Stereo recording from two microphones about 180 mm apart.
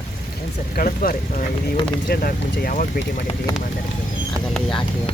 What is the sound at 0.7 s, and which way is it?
Speech, 50° left (ahead or behind).